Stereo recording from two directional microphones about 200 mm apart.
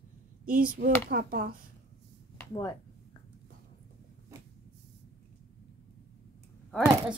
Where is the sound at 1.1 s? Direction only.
45° right (ahead or behind).